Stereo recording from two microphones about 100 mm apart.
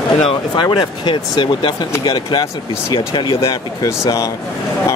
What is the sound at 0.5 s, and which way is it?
Speech, 45° left (ahead or behind).